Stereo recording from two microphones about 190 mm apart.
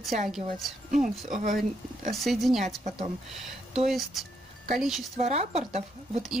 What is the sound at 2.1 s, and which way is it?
Speech, centre (ahead or behind).